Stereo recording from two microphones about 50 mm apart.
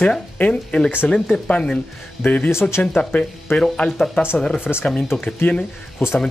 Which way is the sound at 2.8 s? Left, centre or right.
Left.